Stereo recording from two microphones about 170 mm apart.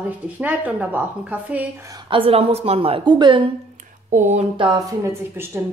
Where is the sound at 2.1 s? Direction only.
35° right (ahead or behind).